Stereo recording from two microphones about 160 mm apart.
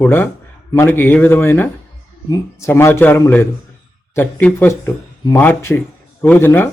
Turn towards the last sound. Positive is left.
turn(degrees=15)  # may be behind; listen again after turning